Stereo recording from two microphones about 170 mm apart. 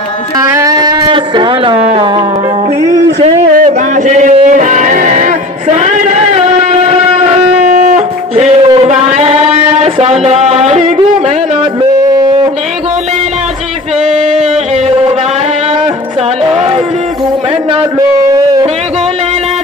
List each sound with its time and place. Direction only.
0.4 s speech: 20° right (ahead or behind)
3.5 s music: 45° right (ahead or behind)
7.6 s a sound: 55° right (ahead or behind)